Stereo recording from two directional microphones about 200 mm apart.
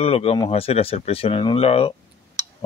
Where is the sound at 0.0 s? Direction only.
30° left (ahead or behind).